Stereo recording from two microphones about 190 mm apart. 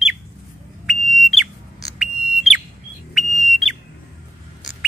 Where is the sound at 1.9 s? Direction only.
5° right (ahead or behind).